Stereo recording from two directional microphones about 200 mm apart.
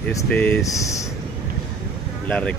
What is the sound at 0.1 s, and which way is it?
Speech, 10° left (ahead or behind).